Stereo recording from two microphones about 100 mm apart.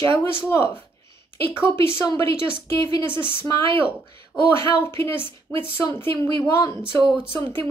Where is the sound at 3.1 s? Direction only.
55° right (ahead or behind).